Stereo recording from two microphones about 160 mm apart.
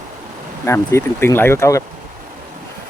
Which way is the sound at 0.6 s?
15° left (ahead or behind).